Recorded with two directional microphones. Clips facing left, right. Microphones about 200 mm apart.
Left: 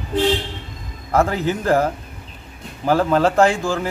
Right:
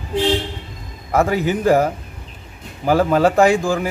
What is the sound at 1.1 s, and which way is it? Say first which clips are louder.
A man's voice: right 1 dB; 5° right (ahead or behind).